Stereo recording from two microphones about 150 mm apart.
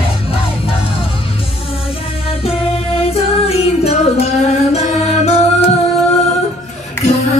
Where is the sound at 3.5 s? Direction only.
45° left (ahead or behind).